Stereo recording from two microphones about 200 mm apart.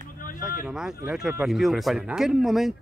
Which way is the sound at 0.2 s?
45° left (ahead or behind).